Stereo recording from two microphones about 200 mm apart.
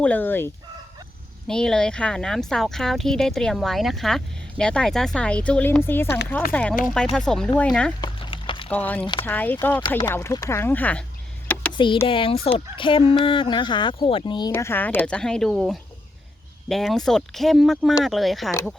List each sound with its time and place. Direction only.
0.0 s speech: 10° left (ahead or behind)
8.0 s a sound: 25° left (ahead or behind)
8.7 s speech: 10° left (ahead or behind)
9.8 s speech: 20° left (ahead or behind)
11.5 s a sound: 10° left (ahead or behind)
12.0 s speech: 25° left (ahead or behind)
14.5 s speech: 10° left (ahead or behind)